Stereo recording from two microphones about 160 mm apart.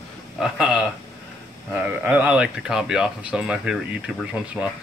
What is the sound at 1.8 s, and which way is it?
Speech, 10° right (ahead or behind).